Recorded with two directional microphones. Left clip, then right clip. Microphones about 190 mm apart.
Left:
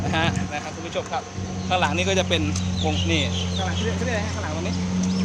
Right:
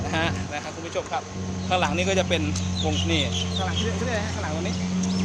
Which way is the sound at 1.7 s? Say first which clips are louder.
Left 1 dB; 5° right (ahead or behind).